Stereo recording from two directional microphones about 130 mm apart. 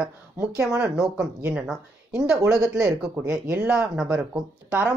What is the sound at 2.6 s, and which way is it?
A man's voice, 25° right (ahead or behind).